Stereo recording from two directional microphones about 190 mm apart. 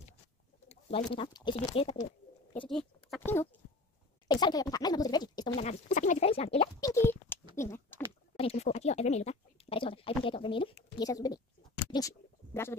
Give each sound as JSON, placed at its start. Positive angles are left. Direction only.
{"t": 0.7, "sound": "bird", "side_deg": 30}
{"t": 1.1, "sound": "speech", "side_deg": 25}
{"t": 2.7, "sound": "speech", "side_deg": 5}
{"t": 4.3, "sound": "speech", "side_deg": 20}
{"t": 5.6, "sound": "speech", "side_deg": 40}
{"t": 6.8, "sound": "speech", "side_deg": 15}
{"t": 7.5, "sound": "a sound", "side_deg": 15}
{"t": 8.4, "sound": "speech", "side_deg": 35}